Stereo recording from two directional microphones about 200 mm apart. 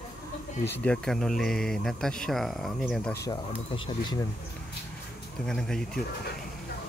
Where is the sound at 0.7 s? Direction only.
5° left (ahead or behind).